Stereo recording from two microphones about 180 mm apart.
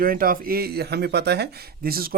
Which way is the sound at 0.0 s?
55° right (ahead or behind).